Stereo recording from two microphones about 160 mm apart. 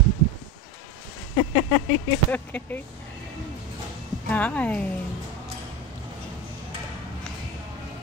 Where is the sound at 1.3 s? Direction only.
20° left (ahead or behind).